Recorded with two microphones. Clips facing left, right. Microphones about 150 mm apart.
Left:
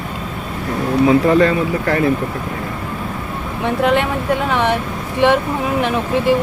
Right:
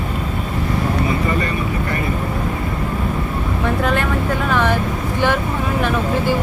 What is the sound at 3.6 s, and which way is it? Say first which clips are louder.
Speech: left 4 dB; 25° left (ahead or behind).